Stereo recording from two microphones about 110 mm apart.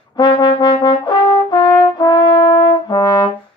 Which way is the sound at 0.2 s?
40° left (ahead or behind).